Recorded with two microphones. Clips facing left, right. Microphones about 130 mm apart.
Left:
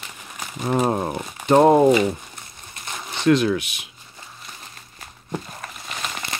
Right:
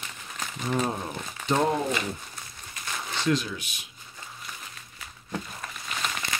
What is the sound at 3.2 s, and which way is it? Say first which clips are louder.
Speech: left 10 dB; 70° left (ahead or behind).